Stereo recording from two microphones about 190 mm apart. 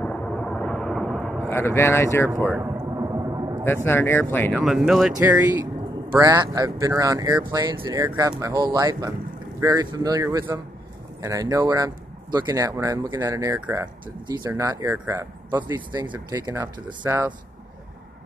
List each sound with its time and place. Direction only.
0.0 s vehicle: 5° left (ahead or behind)
1.5 s speech: 15° left (ahead or behind)
2.5 s a sound: 15° right (ahead or behind)
3.6 s speech: 10° left (ahead or behind)
4.5 s speech: centre (ahead or behind)
6.1 s speech: 20° right (ahead or behind)